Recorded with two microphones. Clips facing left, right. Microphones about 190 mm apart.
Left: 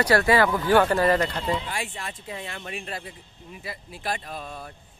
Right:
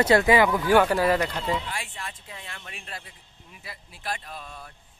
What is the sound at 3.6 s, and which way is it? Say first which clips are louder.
Speech: left 3 dB; centre (ahead or behind).